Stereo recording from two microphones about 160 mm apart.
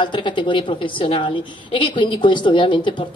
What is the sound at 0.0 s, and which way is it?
A woman's voice, 30° left (ahead or behind).